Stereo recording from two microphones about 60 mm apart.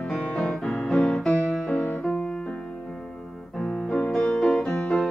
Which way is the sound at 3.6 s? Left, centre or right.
Centre.